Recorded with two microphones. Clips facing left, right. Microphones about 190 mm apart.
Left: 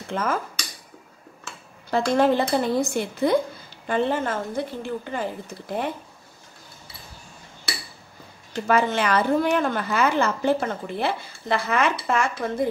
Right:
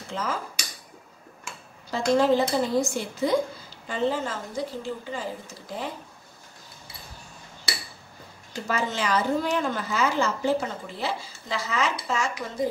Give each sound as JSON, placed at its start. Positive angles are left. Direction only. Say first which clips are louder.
{"t": 0.1, "sound": "dishes", "louder": "left 5 dB", "side_deg": 55}
{"t": 1.9, "sound": "a woman's voice", "louder": "left 1 dB", "side_deg": 60}
{"t": 8.6, "sound": "a woman's voice", "louder": "left 6 dB", "side_deg": 60}